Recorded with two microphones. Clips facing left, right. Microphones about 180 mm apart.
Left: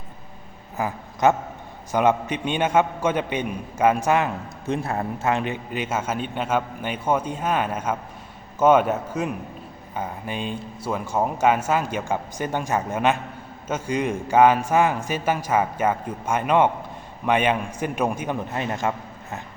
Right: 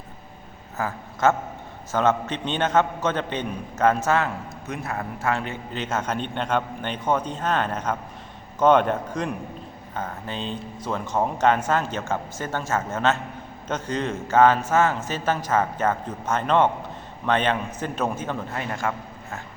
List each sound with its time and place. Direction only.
0.8 s a man's voice: 15° left (ahead or behind)
4.6 s a man's voice: 30° left (ahead or behind)